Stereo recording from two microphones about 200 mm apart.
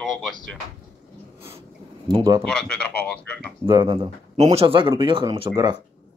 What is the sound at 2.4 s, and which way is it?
Speech, 5° left (ahead or behind).